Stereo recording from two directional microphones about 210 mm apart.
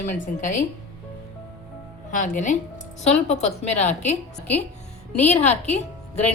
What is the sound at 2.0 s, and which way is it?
Speech, 40° left (ahead or behind).